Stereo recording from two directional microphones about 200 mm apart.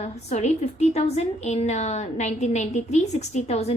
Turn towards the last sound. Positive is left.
turn(degrees=35)  # may be behind; listen again after turning